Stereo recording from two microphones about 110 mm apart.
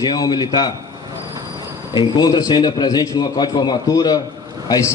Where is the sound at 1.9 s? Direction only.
40° left (ahead or behind).